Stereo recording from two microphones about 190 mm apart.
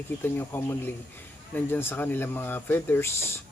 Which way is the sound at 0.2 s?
10° left (ahead or behind).